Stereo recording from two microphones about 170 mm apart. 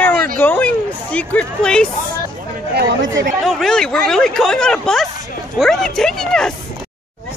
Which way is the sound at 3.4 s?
Centre (ahead or behind).